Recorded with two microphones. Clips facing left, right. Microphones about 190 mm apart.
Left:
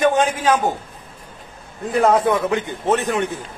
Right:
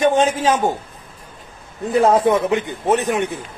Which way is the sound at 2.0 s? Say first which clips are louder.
Right 1 dB; 25° right (ahead or behind).